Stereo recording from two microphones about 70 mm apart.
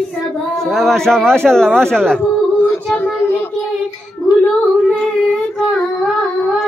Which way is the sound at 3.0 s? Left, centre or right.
Left.